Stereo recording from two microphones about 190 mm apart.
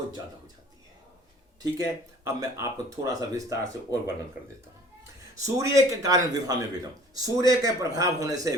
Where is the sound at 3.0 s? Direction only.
15° right (ahead or behind).